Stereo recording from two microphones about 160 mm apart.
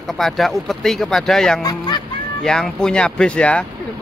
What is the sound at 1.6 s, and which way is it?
Speech, 25° left (ahead or behind).